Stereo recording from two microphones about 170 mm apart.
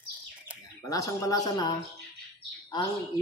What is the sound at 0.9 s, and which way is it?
Speech, 20° left (ahead or behind).